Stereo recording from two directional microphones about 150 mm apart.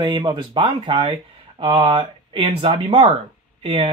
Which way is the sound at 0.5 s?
40° right (ahead or behind).